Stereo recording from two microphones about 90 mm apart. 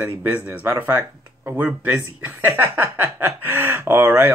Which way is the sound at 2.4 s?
20° right (ahead or behind).